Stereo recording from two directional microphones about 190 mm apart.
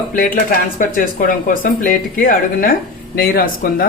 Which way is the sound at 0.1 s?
50° left (ahead or behind).